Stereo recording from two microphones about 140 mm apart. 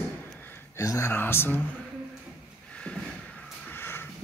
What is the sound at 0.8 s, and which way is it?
Speech, 20° left (ahead or behind).